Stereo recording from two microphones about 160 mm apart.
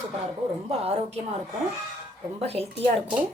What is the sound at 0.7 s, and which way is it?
Speech, 40° right (ahead or behind).